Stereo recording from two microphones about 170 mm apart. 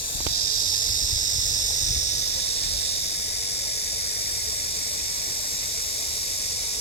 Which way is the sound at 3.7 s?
70° left (ahead or behind).